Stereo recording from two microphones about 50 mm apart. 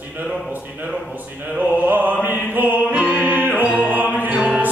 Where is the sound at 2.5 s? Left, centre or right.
Right.